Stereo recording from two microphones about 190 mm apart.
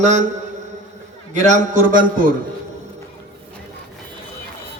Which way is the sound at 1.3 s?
40° right (ahead or behind).